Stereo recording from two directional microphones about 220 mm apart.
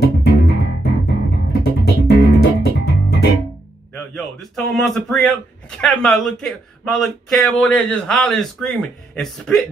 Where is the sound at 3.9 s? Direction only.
Centre (ahead or behind).